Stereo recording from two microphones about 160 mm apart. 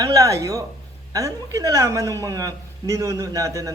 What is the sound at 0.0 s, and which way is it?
A woman's voice, 20° right (ahead or behind).